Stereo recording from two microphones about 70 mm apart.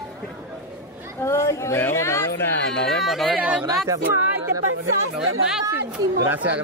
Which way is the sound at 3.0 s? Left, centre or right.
Centre.